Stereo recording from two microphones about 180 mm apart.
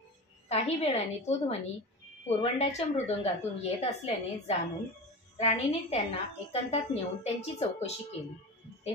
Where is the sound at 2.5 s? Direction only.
35° left (ahead or behind).